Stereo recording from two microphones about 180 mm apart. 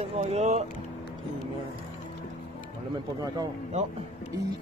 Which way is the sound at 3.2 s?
20° right (ahead or behind).